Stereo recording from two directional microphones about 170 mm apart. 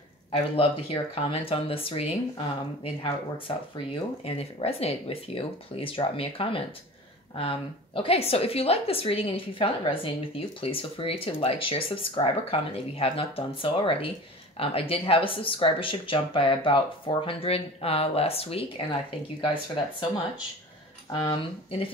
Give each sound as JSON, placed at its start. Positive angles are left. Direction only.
{"t": 0.6, "sound": "speech", "side_deg": 35}
{"t": 21.1, "sound": "speech", "side_deg": 30}